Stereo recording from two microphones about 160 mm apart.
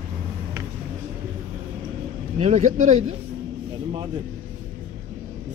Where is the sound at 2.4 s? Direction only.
45° right (ahead or behind).